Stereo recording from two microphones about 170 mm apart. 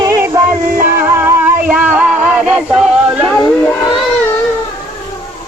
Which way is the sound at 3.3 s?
5° left (ahead or behind).